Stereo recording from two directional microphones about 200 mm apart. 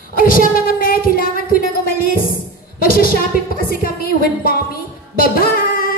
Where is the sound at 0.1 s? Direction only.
45° left (ahead or behind).